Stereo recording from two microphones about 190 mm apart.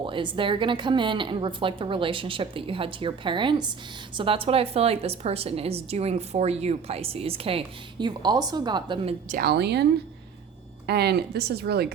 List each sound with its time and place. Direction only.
0.0 s a woman's voice: 25° right (ahead or behind)
9.3 s speech: 55° right (ahead or behind)
10.8 s speech: 60° right (ahead or behind)